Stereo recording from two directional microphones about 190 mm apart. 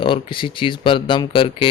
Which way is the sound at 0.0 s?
25° left (ahead or behind).